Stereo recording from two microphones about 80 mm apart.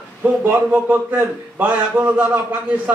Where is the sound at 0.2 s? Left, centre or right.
Right.